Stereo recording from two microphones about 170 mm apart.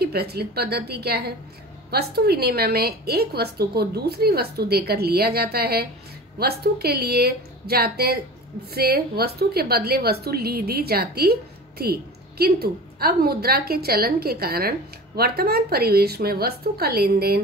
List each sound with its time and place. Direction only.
0.0 s a woman's voice: 70° right (ahead or behind)